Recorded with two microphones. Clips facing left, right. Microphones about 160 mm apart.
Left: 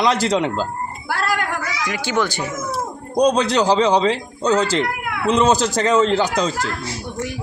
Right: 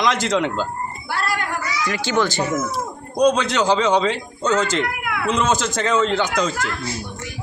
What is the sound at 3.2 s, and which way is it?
Speech, 35° left (ahead or behind).